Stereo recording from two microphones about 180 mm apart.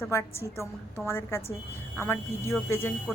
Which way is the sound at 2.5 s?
15° left (ahead or behind).